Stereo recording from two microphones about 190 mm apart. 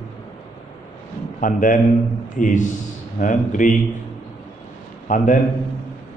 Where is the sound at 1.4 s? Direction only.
45° left (ahead or behind).